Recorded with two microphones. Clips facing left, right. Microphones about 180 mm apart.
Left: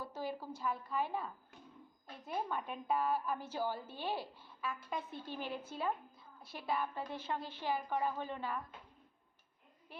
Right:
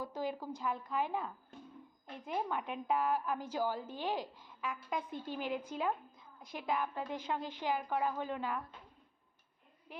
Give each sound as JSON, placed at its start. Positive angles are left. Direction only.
{"t": 0.0, "sound": "a woman's voice", "side_deg": -15}
{"t": 2.2, "sound": "a woman's voice", "side_deg": -15}